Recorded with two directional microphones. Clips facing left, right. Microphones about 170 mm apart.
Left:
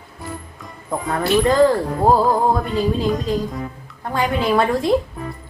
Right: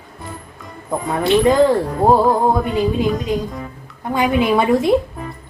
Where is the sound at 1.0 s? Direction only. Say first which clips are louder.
Right 3 dB; centre (ahead or behind).